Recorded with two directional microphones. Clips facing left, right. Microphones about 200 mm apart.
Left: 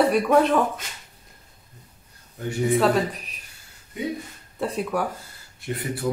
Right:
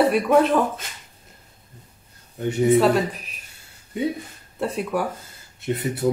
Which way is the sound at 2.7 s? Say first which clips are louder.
Right 2 dB; centre (ahead or behind).